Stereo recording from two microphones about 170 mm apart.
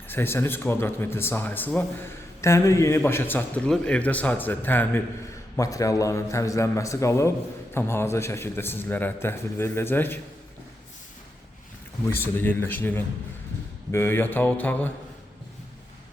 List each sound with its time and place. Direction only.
0.1 s a man's voice: 15° left (ahead or behind)
12.2 s a man's voice: 10° left (ahead or behind)